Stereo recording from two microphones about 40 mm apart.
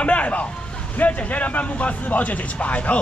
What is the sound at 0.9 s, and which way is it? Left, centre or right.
A man's voice, left.